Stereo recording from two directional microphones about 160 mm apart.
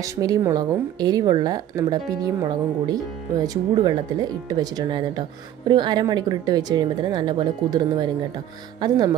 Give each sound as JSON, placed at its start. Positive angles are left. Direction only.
{"t": 0.2, "sound": "a woman's voice", "side_deg": -20}